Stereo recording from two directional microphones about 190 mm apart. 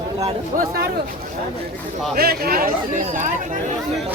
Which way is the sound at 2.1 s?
55° right (ahead or behind).